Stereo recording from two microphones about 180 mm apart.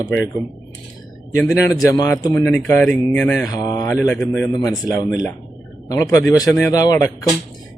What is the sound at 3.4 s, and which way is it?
Speech, 20° left (ahead or behind).